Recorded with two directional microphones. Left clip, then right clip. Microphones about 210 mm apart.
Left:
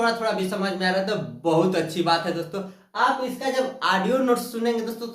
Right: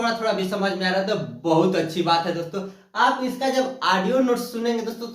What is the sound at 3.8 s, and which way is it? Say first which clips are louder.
Speech: right 1 dB; 20° left (ahead or behind).